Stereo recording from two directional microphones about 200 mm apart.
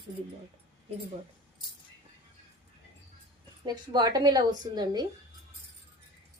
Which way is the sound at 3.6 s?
20° right (ahead or behind).